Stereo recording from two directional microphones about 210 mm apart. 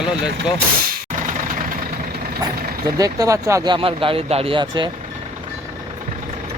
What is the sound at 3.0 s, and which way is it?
Speech, 15° right (ahead or behind).